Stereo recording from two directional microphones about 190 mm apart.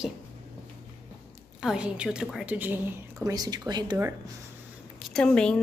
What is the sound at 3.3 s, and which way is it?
Speech, 20° right (ahead or behind).